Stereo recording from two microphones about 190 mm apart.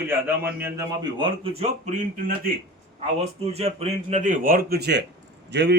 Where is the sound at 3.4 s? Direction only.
35° right (ahead or behind).